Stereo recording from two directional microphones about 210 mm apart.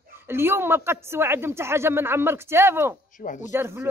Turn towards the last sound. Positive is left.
turn(degrees=-10)  # may be behind; listen again after turning